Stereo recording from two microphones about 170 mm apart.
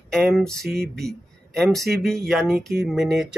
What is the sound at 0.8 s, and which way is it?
Speech, 70° right (ahead or behind).